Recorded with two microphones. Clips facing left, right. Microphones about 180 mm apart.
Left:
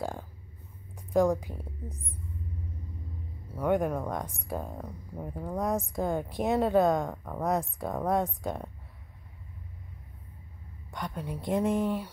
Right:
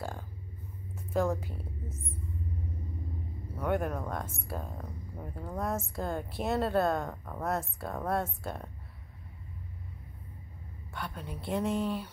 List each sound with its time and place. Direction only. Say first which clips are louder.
1.1 s a woman's voice: left 5 dB; 15° left (ahead or behind)
3.5 s speech: left 4 dB; 10° left (ahead or behind)
10.9 s speech: left 4 dB; 15° left (ahead or behind)